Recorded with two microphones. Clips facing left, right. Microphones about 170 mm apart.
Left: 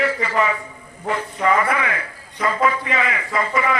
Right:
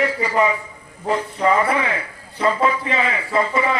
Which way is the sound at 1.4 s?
30° right (ahead or behind).